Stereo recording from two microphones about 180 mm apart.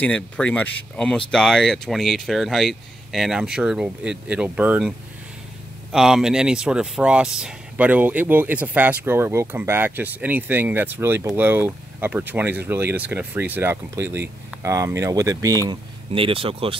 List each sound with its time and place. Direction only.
0.0 s speech: 5° left (ahead or behind); by 15.8 s 20° right (ahead or behind)
16.1 s speech: 30° right (ahead or behind)